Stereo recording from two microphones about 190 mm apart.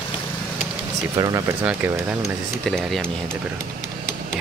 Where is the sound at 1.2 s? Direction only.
20° right (ahead or behind).